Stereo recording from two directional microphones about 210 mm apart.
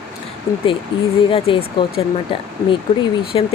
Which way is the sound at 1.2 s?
25° left (ahead or behind).